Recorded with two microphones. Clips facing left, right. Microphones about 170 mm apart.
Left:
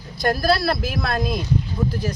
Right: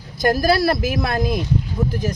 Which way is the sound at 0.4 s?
15° right (ahead or behind).